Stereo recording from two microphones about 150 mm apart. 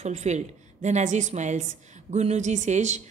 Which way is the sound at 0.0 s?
50° right (ahead or behind).